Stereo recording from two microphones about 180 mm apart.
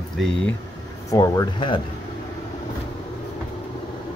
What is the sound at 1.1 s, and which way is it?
Speech, 20° left (ahead or behind).